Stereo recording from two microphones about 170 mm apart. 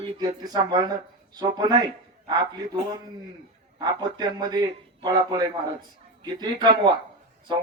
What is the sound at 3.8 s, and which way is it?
Speech, 25° right (ahead or behind).